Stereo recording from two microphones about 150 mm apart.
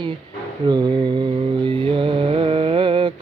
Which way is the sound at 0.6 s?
30° right (ahead or behind).